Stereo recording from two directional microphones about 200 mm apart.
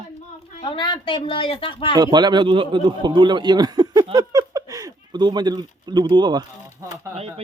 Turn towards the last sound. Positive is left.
turn(degrees=-15)  # may be behind; listen again after turning